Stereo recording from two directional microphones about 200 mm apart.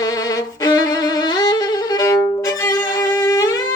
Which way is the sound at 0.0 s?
20° left (ahead or behind).